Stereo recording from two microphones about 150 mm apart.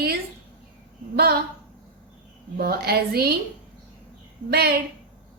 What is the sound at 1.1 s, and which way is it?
Speech, 90° right.